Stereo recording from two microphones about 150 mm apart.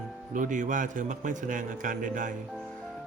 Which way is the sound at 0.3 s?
60° right (ahead or behind).